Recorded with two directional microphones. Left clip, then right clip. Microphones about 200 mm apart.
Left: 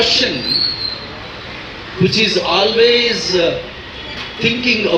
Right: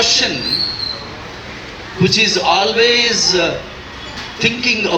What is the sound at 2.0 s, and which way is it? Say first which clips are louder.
A man's voice: right 2 dB; centre (ahead or behind).